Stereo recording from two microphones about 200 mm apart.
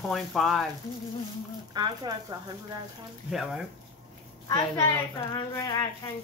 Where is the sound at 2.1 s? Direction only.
20° right (ahead or behind).